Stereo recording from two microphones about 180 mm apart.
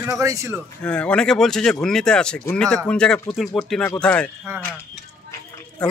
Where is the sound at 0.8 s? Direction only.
5° left (ahead or behind).